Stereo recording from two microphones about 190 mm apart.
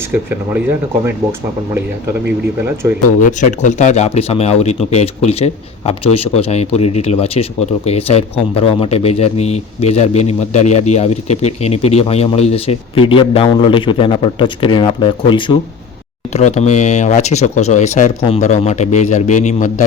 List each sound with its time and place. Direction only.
0.1 s speech: 10° right (ahead or behind)
3.2 s a man's voice: 40° left (ahead or behind); by 15.5 s 25° left (ahead or behind)
16.3 s a man's voice: 40° left (ahead or behind)